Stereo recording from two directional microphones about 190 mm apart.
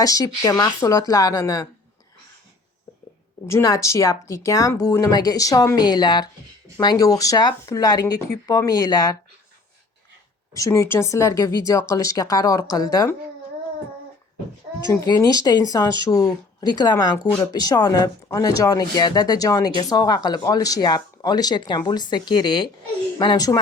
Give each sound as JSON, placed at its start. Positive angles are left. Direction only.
{"t": 0.0, "sound": "speech", "side_deg": 20}
{"t": 3.4, "sound": "speech", "side_deg": 15}
{"t": 10.5, "sound": "speech", "side_deg": 15}
{"t": 15.0, "sound": "speech", "side_deg": 20}